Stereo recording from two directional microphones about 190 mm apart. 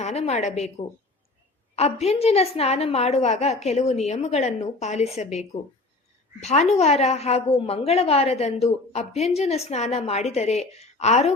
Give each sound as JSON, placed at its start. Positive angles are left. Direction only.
{"t": 0.0, "sound": "a woman's voice", "side_deg": 35}
{"t": 1.7, "sound": "a woman's voice", "side_deg": 35}